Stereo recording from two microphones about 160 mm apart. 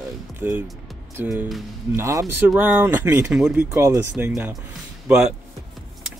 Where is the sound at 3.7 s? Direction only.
20° right (ahead or behind).